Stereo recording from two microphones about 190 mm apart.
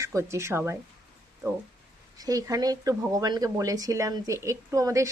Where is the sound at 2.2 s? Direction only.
20° right (ahead or behind).